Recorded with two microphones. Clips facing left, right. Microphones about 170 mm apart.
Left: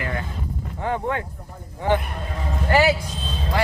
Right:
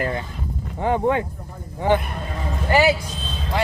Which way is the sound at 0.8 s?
20° right (ahead or behind).